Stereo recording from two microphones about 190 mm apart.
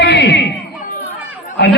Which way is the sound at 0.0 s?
65° left (ahead or behind).